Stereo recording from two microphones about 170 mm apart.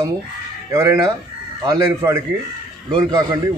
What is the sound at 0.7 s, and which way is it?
A man's voice, 20° right (ahead or behind).